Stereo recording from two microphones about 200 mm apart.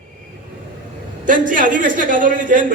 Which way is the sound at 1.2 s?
40° right (ahead or behind).